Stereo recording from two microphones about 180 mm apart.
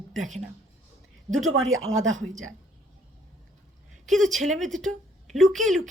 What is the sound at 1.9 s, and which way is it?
Speech, 20° right (ahead or behind).